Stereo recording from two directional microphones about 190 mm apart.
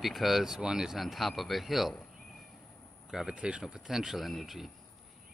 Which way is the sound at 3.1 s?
5° right (ahead or behind).